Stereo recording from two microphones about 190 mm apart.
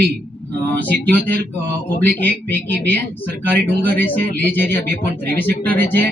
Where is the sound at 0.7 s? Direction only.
10° left (ahead or behind).